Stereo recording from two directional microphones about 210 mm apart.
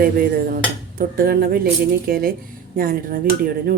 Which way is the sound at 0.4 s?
40° right (ahead or behind).